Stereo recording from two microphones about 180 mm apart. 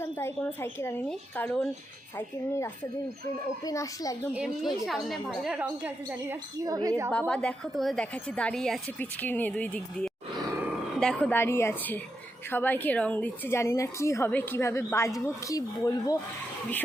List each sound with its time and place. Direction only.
0.0 s a woman's voice: 15° left (ahead or behind)
4.4 s a woman's voice: 5° right (ahead or behind)
6.7 s speech: 20° right (ahead or behind)
7.1 s a woman's voice: 5° left (ahead or behind)